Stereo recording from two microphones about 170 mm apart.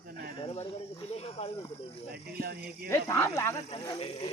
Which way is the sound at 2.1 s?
60° right (ahead or behind).